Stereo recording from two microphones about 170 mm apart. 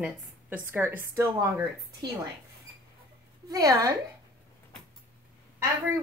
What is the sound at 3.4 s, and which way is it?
Speech, 20° right (ahead or behind).